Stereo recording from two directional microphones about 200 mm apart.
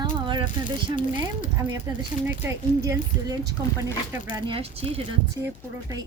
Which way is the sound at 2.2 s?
15° right (ahead or behind).